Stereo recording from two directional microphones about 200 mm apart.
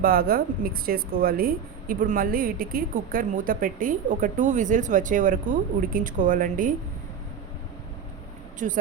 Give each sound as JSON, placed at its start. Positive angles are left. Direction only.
{"t": 0.0, "sound": "speech", "side_deg": -45}
{"t": 8.5, "sound": "speech", "side_deg": -40}